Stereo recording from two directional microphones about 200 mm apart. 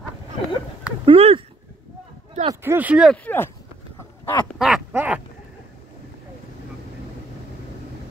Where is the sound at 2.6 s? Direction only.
10° right (ahead or behind).